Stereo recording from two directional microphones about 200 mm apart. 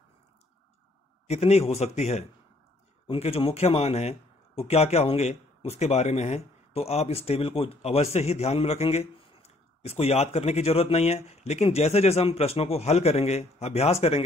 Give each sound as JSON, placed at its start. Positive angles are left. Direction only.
{"t": 1.3, "sound": "speech", "side_deg": 30}